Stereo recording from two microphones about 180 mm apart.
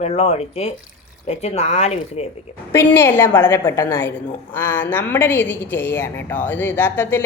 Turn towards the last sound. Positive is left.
turn(degrees=10)  # may be behind; listen again after turning